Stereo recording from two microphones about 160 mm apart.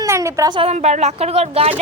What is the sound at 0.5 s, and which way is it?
A woman's voice, 40° right (ahead or behind).